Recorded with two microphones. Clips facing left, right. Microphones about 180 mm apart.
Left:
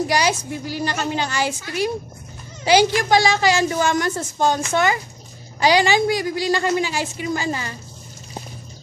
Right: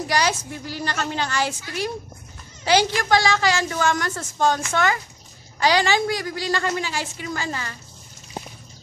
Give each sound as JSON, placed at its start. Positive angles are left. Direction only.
{"t": 0.1, "sound": "a woman's voice", "side_deg": 10}